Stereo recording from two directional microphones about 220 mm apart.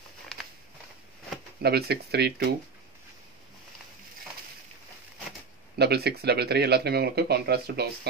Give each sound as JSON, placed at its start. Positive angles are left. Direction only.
{"t": 0.3, "sound": "a sound", "side_deg": 0}
{"t": 1.6, "sound": "speech", "side_deg": -45}
{"t": 5.8, "sound": "speech", "side_deg": -45}